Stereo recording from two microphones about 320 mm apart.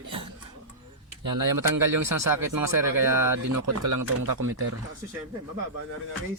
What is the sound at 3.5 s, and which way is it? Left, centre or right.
Speech, right.